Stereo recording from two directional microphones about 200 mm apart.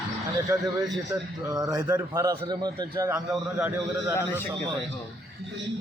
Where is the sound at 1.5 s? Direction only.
20° right (ahead or behind).